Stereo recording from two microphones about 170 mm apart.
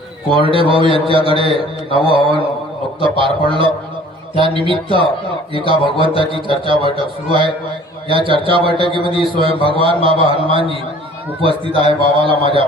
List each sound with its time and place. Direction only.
0.3 s a man's voice: 30° right (ahead or behind)
6.0 s a man's voice: 30° right (ahead or behind)